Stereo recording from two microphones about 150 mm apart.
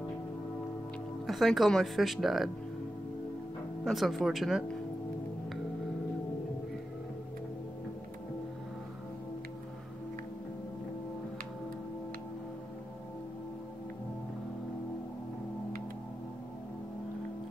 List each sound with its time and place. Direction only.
1.2 s speech: centre (ahead or behind)
3.8 s speech: centre (ahead or behind)